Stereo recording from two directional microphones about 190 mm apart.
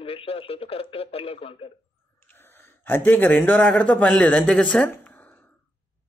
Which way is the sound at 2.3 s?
10° left (ahead or behind).